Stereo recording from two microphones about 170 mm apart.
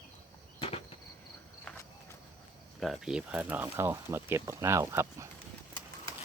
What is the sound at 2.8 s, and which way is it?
Speech, centre (ahead or behind).